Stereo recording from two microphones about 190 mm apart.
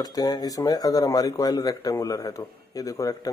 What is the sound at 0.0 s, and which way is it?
A man's voice, 20° left (ahead or behind).